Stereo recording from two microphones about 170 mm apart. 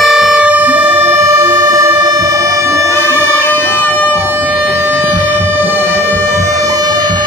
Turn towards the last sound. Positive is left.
turn(degrees=-20)  # may be behind; listen again after turning